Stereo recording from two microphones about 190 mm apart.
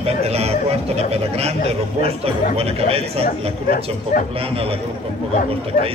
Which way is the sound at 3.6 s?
50° left (ahead or behind).